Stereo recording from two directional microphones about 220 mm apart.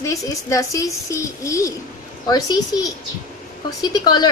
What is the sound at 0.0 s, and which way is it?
A woman's voice, 15° left (ahead or behind).